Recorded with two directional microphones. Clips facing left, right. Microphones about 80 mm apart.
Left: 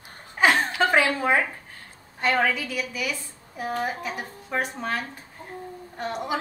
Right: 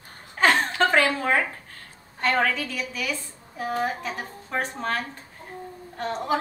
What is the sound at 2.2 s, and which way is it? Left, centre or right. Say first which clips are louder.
A woman's voice: even; centre.